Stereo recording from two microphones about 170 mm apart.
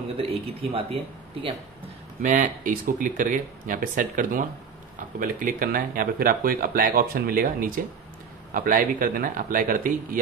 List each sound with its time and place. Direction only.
0.2 s speech: 35° right (ahead or behind)
2.2 s speech: 50° right (ahead or behind)